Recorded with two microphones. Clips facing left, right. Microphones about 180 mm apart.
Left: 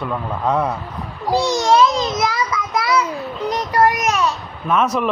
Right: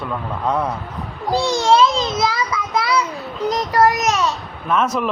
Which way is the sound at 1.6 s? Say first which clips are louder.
Right 1 dB; 30° right (ahead or behind).